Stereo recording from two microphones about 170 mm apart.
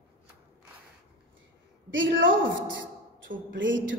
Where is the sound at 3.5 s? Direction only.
90° right.